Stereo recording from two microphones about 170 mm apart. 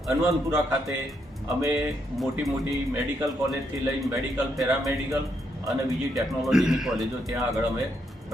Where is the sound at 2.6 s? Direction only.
20° right (ahead or behind).